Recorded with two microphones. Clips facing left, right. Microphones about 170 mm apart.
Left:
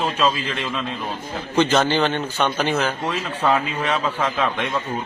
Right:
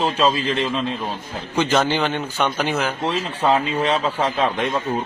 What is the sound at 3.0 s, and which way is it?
A man's voice, 35° right (ahead or behind).